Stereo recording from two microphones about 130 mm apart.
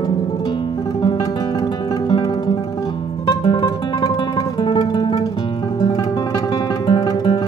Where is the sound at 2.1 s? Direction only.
35° left (ahead or behind).